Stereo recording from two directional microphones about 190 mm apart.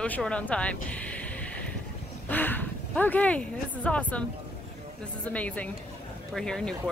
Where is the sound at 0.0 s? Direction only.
5° left (ahead or behind).